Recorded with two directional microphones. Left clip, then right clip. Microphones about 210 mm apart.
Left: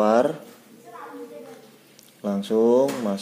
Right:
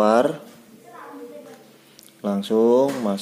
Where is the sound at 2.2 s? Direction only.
10° right (ahead or behind).